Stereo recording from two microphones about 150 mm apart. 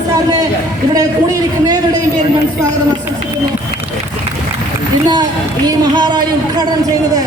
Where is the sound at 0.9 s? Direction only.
25° right (ahead or behind).